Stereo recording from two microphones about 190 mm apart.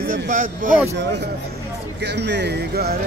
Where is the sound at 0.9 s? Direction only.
65° right (ahead or behind).